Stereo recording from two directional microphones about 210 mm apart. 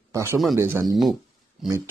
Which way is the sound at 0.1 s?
15° right (ahead or behind).